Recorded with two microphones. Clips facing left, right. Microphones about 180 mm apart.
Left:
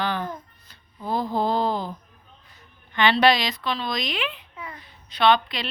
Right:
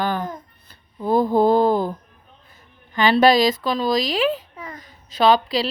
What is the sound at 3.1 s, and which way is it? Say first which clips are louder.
A child's voice: right 9 dB; 45° right (ahead or behind).